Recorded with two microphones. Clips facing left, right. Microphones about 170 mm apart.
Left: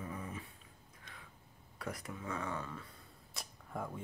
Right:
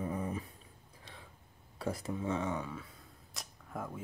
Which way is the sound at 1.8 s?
30° right (ahead or behind).